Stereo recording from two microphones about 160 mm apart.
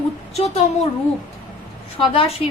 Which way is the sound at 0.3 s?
40° left (ahead or behind).